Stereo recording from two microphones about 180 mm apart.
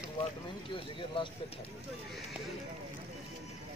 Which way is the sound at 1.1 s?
30° left (ahead or behind).